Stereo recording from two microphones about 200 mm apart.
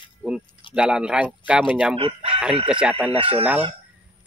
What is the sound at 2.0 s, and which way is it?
Speech, 30° right (ahead or behind).